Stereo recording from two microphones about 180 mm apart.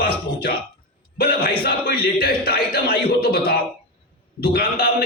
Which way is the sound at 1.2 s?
60° left (ahead or behind).